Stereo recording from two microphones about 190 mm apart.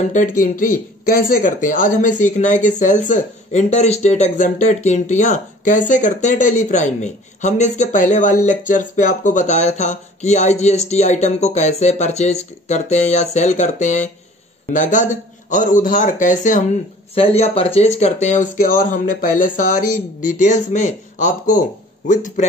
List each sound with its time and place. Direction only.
0.0 s speech: 40° left (ahead or behind)
17.1 s speech: 30° left (ahead or behind)